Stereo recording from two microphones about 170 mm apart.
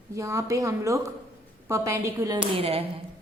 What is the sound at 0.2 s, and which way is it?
A woman's voice, 20° right (ahead or behind).